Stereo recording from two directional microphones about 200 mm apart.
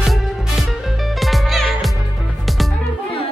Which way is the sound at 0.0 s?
Centre (ahead or behind).